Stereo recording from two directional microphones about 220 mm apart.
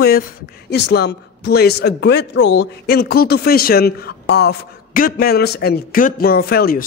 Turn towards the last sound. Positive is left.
turn(degrees=45)  # may be behind; listen again after turning